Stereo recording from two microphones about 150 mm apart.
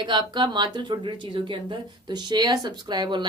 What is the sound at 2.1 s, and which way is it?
Speech, 30° right (ahead or behind).